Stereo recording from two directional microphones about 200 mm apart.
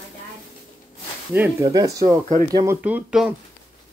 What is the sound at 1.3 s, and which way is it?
Speech, 15° right (ahead or behind).